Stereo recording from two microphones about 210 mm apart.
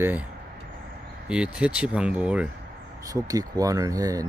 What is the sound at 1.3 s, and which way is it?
Speech, 5° right (ahead or behind).